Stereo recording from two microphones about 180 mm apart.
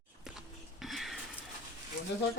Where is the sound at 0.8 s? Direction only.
Centre (ahead or behind).